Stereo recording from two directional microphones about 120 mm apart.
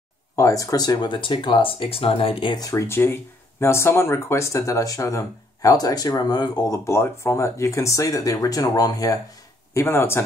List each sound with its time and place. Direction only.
0.4 s speech: 25° left (ahead or behind); by 2.6 s 45° left (ahead or behind)
2.6 s speech: 25° left (ahead or behind)
6.8 s speech: 25° left (ahead or behind)
9.8 s speech: 20° left (ahead or behind)